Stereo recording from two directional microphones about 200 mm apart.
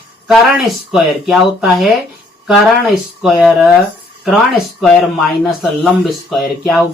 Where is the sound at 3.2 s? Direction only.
Centre (ahead or behind).